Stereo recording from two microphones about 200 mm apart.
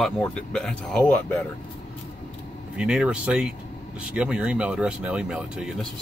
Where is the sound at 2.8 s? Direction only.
5° right (ahead or behind).